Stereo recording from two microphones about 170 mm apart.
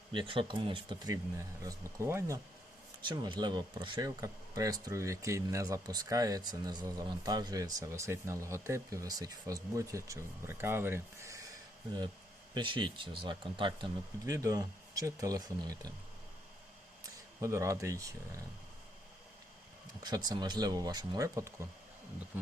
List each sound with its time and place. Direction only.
0.1 s speech: 30° right (ahead or behind)
3.1 s speech: 25° right (ahead or behind)
12.5 s speech: 30° right (ahead or behind)
17.4 s speech: 15° right (ahead or behind)
20.0 s speech: 25° right (ahead or behind)